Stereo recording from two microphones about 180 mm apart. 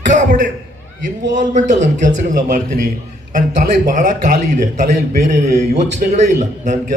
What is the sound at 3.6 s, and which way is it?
Speech, 45° right (ahead or behind).